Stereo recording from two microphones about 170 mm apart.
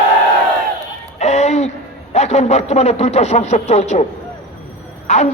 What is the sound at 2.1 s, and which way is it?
A man's voice, 40° left (ahead or behind).